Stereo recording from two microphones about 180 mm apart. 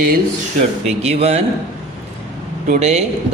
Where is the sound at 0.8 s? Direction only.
35° right (ahead or behind).